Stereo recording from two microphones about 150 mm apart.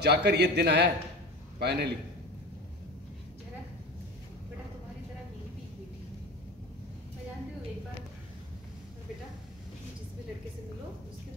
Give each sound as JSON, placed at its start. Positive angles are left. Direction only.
{"t": 0.0, "sound": "a man's voice", "side_deg": -90}